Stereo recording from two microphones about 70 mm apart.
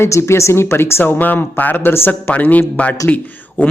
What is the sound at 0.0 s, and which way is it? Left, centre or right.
Speech, left.